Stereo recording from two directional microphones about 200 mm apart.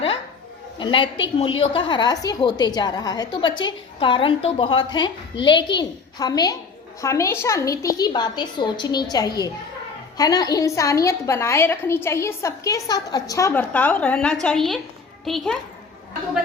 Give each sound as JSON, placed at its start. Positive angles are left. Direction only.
{"t": 0.8, "sound": "a woman's voice", "side_deg": 25}